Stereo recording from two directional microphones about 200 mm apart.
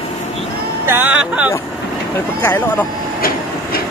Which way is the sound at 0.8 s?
10° right (ahead or behind).